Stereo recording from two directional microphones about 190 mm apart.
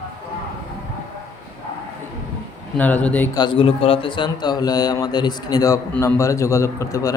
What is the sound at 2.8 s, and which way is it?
Speech, 10° left (ahead or behind).